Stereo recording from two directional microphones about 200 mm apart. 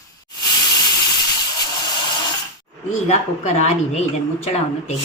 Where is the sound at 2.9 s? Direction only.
35° left (ahead or behind).